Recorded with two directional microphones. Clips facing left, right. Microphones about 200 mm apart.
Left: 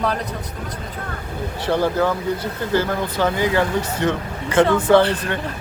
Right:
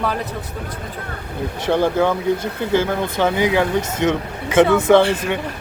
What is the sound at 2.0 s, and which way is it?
Speech, 20° right (ahead or behind).